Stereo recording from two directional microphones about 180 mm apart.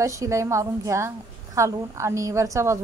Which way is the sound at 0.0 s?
15° right (ahead or behind).